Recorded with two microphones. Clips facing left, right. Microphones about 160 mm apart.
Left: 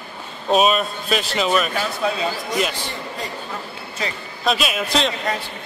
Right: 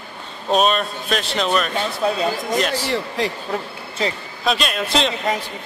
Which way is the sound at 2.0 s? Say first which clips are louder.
Right 3 dB; 35° right (ahead or behind).